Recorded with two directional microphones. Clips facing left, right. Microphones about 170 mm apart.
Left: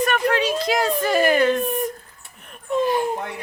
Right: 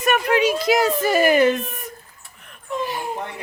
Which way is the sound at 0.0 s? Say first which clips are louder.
Right 2 dB; 10° right (ahead or behind).